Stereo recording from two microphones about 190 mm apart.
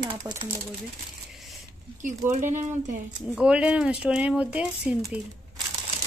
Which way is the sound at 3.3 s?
5° right (ahead or behind).